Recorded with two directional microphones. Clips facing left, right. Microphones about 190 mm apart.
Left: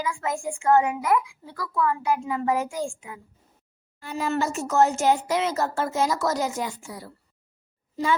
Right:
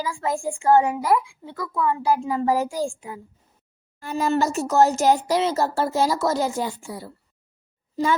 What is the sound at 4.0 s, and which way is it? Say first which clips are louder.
Speech: right 4 dB; 45° right (ahead or behind).